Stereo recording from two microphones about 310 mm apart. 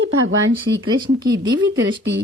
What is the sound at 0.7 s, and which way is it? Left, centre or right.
A woman's voice, right.